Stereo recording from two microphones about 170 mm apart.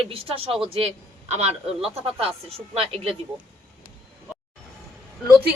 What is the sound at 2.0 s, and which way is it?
Speech, 35° right (ahead or behind).